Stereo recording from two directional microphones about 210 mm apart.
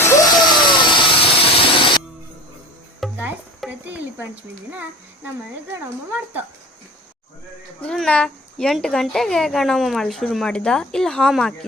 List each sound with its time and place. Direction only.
0.0 s a sound: 15° left (ahead or behind)
3.0 s music: 5° right (ahead or behind)
4.7 s a child's voice: 10° right (ahead or behind)
7.8 s speech: 5° left (ahead or behind)